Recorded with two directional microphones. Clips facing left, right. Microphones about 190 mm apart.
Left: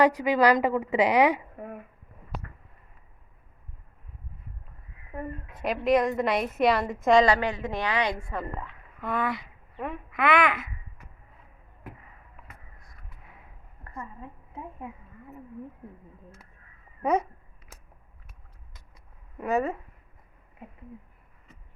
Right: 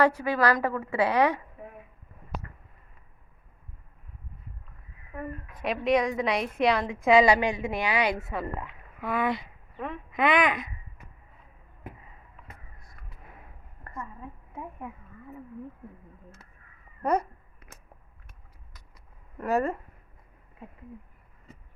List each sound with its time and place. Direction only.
0.0 s a woman's voice: 15° left (ahead or behind)
1.6 s a sound: 55° left (ahead or behind)
5.1 s speech: 25° left (ahead or behind)
5.6 s a woman's voice: centre (ahead or behind)
9.7 s speech: 10° left (ahead or behind)
10.1 s a child's voice: 20° right (ahead or behind)
17.0 s speech: 5° left (ahead or behind)
19.4 s a woman's voice: centre (ahead or behind)